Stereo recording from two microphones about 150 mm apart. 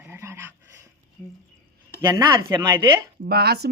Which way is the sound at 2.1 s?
20° right (ahead or behind).